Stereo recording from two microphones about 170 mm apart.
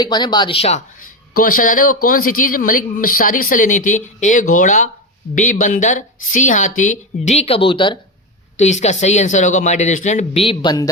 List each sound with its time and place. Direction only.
0.0 s speech: 25° left (ahead or behind)
1.3 s speech: 55° left (ahead or behind); by 7.9 s 30° left (ahead or behind)
8.5 s speech: 40° left (ahead or behind); by 10.8 s 25° left (ahead or behind)